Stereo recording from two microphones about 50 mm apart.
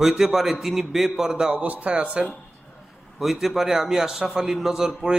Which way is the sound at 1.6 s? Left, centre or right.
Right.